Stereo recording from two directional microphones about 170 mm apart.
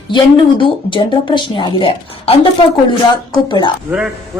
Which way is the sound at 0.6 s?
30° left (ahead or behind).